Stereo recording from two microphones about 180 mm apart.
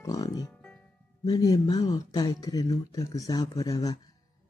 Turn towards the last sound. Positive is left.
turn(degrees=20)  # may be behind; listen again after turning